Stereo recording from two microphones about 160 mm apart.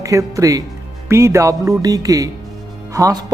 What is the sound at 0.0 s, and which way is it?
Speech, 20° right (ahead or behind).